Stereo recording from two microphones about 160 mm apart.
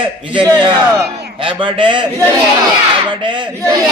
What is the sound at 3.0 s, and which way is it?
Speech, 30° right (ahead or behind).